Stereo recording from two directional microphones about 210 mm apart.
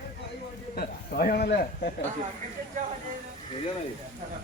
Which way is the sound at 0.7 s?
45° left (ahead or behind).